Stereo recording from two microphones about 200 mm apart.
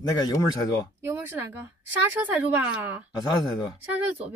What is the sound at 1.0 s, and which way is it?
A woman's voice, 10° right (ahead or behind).